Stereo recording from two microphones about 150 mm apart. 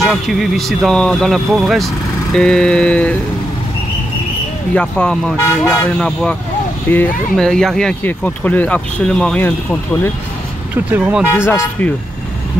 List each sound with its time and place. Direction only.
0.0 s speech: centre (ahead or behind)
4.7 s speech: 5° left (ahead or behind)
10.9 s speech: 10° right (ahead or behind)
11.3 s speech: 15° left (ahead or behind)